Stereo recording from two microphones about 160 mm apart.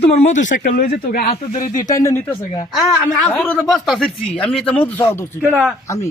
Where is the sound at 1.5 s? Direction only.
55° left (ahead or behind).